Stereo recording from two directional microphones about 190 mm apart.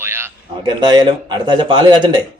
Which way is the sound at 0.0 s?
10° right (ahead or behind).